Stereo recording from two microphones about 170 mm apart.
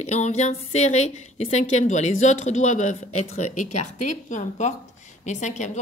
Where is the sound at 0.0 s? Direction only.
40° left (ahead or behind).